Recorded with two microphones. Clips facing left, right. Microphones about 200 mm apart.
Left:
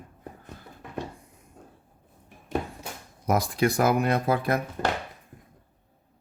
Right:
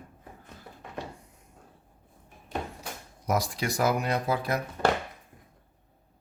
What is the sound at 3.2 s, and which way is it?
Speech, 55° left (ahead or behind).